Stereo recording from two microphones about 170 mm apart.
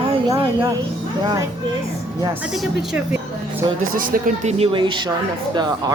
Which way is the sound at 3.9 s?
55° right (ahead or behind).